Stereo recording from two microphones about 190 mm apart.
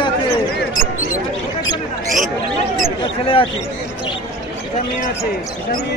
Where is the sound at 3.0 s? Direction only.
30° left (ahead or behind).